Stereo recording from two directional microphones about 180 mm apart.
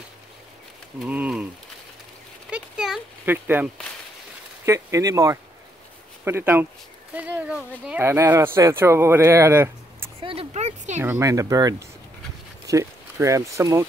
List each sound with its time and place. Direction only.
1.0 s speech: 5° right (ahead or behind)
2.5 s a sound: 5° right (ahead or behind)
4.6 s speech: 20° right (ahead or behind)
10.2 s speech: 35° right (ahead or behind)
11.0 s speech: 15° right (ahead or behind)